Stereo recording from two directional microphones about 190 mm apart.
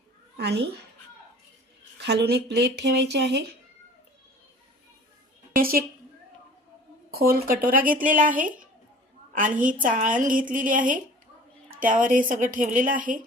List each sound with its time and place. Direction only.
0.3 s speech: 60° right (ahead or behind)
2.0 s speech: 60° right (ahead or behind)
5.5 s a woman's voice: 50° right (ahead or behind)
7.1 s a woman's voice: 50° right (ahead or behind)